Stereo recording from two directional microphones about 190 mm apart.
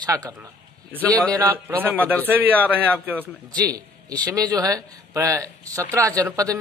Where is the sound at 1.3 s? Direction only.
10° right (ahead or behind).